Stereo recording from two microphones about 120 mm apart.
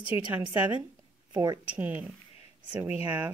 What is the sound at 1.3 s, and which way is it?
Speech, 30° right (ahead or behind).